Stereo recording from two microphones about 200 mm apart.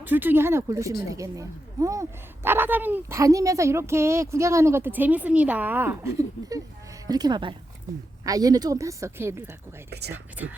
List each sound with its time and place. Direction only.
0.0 s speech: 10° right (ahead or behind)
9.9 s speech: 55° right (ahead or behind)
10.4 s speech: 5° right (ahead or behind)